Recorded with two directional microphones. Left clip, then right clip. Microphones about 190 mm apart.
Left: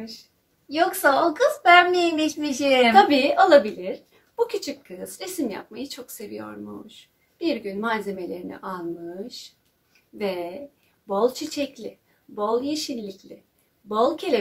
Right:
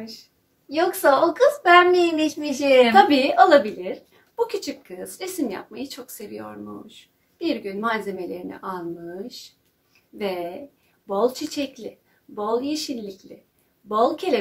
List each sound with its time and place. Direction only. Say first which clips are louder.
0.7 s a woman's voice: right 1 dB; 35° left (ahead or behind)
2.9 s a woman's voice: right 1 dB; centre (ahead or behind)